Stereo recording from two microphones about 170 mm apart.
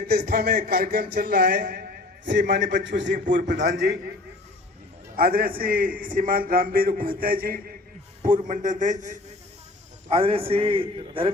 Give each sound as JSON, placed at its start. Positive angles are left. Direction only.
{"t": 0.1, "sound": "a man's voice", "side_deg": -65}
{"t": 2.5, "sound": "a man's voice", "side_deg": -90}
{"t": 3.2, "sound": "a man's voice", "side_deg": -50}
{"t": 3.5, "sound": "a man's voice", "side_deg": -90}
{"t": 5.1, "sound": "a man's voice", "side_deg": -60}
{"t": 8.2, "sound": "a man's voice", "side_deg": -50}
{"t": 10.1, "sound": "a man's voice", "side_deg": -35}